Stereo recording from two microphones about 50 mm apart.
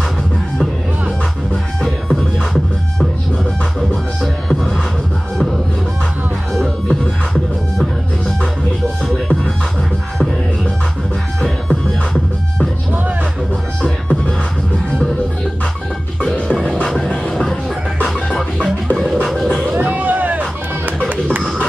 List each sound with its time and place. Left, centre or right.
3.9 s music: centre
6.5 s music: centre
9.1 s music: centre
11.4 s music: centre
16.2 s music: left
16.8 s music: centre
19.8 s music: right